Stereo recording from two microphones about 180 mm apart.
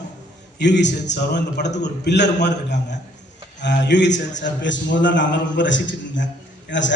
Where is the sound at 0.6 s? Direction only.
75° left (ahead or behind).